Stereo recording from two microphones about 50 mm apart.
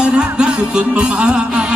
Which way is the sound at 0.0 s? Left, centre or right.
Centre.